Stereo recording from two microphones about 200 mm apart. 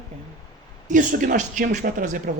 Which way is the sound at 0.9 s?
40° right (ahead or behind).